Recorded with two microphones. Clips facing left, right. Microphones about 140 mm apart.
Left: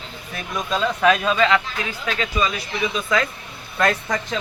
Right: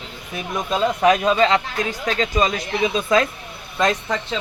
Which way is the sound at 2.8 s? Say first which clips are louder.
Right 4 dB; 25° right (ahead or behind).